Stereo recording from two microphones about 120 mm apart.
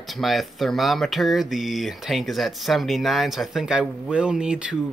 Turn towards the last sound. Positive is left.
turn(degrees=-10)  # may be behind; listen again after turning